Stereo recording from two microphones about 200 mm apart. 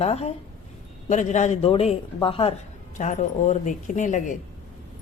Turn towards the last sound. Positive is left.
turn(degrees=40)  # may be behind; listen again after turning